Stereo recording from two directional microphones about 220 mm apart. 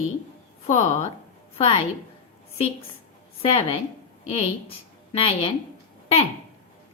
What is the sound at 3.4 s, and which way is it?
A woman's voice, 25° left (ahead or behind).